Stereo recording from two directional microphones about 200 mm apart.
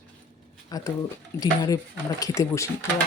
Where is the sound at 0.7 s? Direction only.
20° left (ahead or behind).